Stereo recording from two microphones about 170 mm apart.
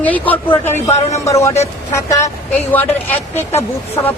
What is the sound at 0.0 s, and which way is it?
A woman's voice, 10° left (ahead or behind).